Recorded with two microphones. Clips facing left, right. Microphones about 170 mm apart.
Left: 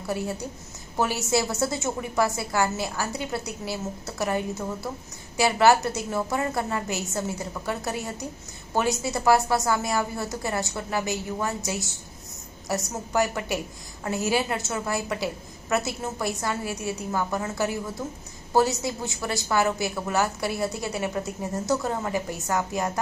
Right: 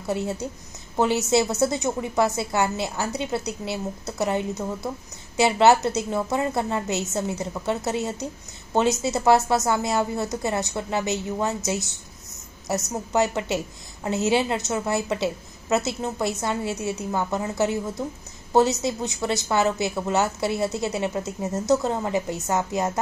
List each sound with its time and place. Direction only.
0.0 s a woman's voice: 20° right (ahead or behind)